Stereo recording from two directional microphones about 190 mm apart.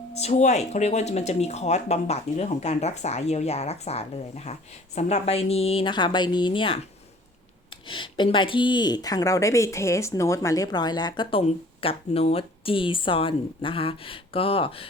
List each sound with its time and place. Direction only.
0.1 s speech: 35° left (ahead or behind)
7.9 s speech: 25° left (ahead or behind)